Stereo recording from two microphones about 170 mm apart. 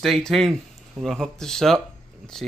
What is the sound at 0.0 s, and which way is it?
Speech, centre (ahead or behind).